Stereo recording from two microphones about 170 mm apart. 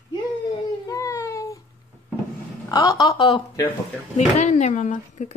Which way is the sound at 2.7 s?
20° left (ahead or behind).